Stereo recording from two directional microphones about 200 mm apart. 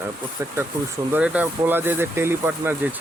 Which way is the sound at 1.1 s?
5° right (ahead or behind).